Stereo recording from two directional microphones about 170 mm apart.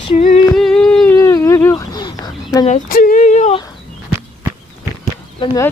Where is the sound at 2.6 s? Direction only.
50° left (ahead or behind).